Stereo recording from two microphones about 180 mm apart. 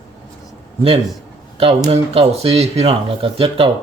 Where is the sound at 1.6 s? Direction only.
30° right (ahead or behind).